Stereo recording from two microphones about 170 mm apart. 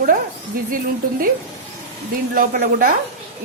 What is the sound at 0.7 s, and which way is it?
Speech, 55° right (ahead or behind).